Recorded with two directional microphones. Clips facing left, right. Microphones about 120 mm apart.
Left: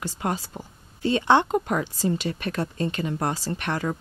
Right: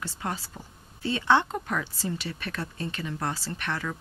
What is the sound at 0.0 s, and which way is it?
Speech, 20° left (ahead or behind).